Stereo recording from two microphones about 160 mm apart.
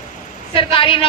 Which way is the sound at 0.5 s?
35° left (ahead or behind).